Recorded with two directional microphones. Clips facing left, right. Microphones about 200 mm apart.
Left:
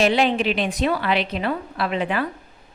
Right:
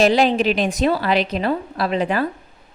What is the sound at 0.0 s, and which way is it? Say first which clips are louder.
A woman's voice: right 3 dB; 40° right (ahead or behind).